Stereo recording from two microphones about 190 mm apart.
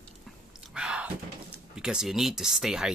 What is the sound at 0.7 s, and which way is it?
Thunk, 5° right (ahead or behind).